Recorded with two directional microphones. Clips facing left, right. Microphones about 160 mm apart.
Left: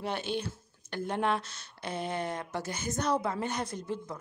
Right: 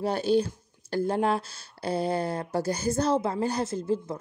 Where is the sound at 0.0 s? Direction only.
35° right (ahead or behind).